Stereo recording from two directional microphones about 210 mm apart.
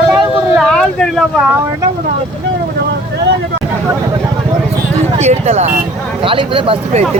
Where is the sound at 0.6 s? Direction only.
5° left (ahead or behind).